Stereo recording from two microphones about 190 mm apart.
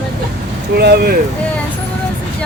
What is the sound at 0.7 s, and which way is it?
Speech, 55° right (ahead or behind).